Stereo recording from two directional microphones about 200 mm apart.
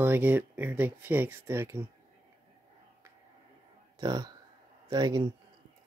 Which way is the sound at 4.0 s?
20° right (ahead or behind).